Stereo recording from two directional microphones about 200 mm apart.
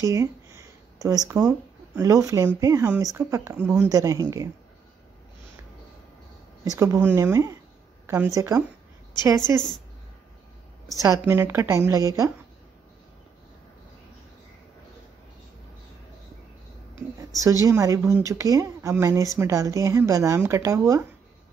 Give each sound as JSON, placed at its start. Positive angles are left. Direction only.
{"t": 0.0, "sound": "a sound", "side_deg": -15}
{"t": 2.0, "sound": "speech", "side_deg": -15}
{"t": 6.6, "sound": "speech", "side_deg": -15}
{"t": 11.0, "sound": "speech", "side_deg": -15}
{"t": 17.4, "sound": "speech", "side_deg": -15}